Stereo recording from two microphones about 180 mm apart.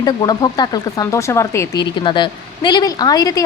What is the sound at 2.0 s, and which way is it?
A woman's voice, 25° left (ahead or behind).